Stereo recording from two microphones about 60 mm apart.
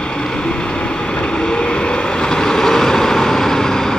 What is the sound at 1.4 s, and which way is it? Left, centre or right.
Vehicle, centre.